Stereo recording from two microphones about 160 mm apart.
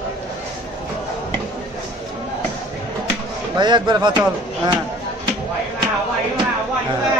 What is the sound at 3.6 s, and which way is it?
Speech, 30° right (ahead or behind).